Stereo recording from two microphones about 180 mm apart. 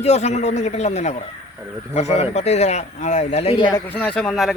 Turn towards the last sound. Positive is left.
turn(degrees=0)  # may be behind; listen again after turning